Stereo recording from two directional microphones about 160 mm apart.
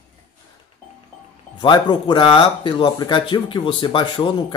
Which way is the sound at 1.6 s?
30° left (ahead or behind).